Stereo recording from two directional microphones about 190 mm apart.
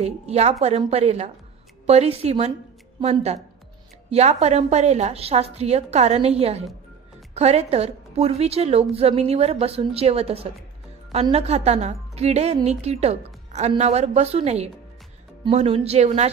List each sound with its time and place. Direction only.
0.0 s a woman's voice: 35° right (ahead or behind)